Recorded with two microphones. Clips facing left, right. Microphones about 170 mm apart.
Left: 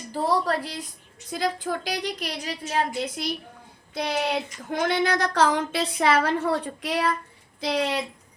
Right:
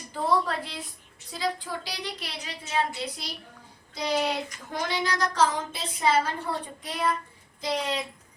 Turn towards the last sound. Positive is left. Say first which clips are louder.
# left 4 dB
turn(degrees=75)  # may be behind; listen again after turning